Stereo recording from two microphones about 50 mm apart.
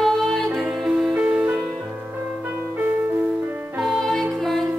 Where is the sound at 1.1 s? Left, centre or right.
Right.